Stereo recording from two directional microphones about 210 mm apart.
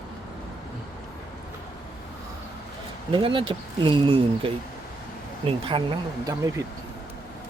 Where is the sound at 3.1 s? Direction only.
25° right (ahead or behind).